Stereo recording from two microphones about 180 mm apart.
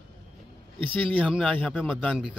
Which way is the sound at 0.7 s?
30° right (ahead or behind).